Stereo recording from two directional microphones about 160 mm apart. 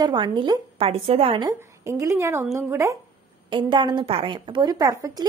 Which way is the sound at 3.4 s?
30° right (ahead or behind).